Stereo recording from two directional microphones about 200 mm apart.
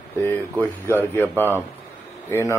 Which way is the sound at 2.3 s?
15° left (ahead or behind).